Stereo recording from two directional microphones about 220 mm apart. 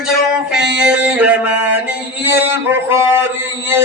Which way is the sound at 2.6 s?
10° right (ahead or behind).